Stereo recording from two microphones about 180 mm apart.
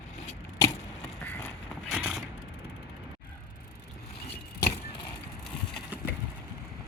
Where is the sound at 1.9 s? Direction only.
5° right (ahead or behind).